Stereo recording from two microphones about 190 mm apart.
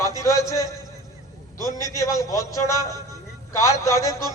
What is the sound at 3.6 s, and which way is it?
Speech, 15° left (ahead or behind).